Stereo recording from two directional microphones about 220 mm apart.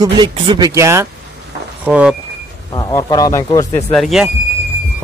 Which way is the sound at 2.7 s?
15° left (ahead or behind).